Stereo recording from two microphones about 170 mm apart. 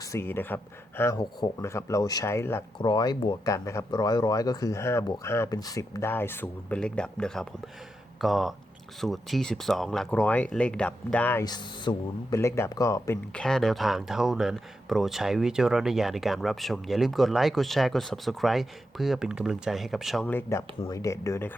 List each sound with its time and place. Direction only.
0.1 s speech: 15° left (ahead or behind)
2.7 s speech: 25° left (ahead or behind)
11.4 s speech: 25° left (ahead or behind)
13.3 s speech: 5° left (ahead or behind)
20.2 s speech: 15° left (ahead or behind)